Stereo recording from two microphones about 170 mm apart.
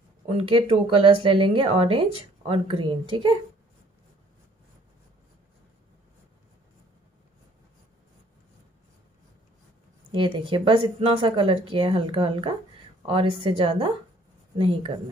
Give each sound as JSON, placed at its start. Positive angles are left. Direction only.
{"t": 0.3, "sound": "speech", "side_deg": -35}
{"t": 10.1, "sound": "speech", "side_deg": -30}